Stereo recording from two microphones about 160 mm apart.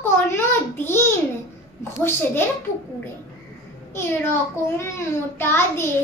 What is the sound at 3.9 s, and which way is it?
Speech, 15° left (ahead or behind).